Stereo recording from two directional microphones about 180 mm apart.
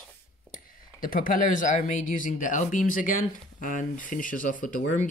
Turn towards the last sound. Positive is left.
turn(degrees=45)  # may be behind; listen again after turning